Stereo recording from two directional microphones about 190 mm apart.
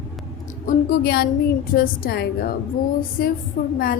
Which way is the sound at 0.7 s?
50° left (ahead or behind).